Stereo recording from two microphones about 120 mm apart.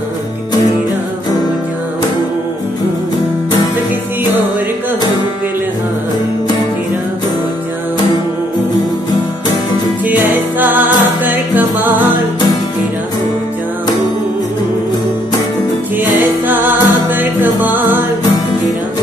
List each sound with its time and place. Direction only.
10.6 s music: 15° right (ahead or behind)
16.2 s music: 15° right (ahead or behind)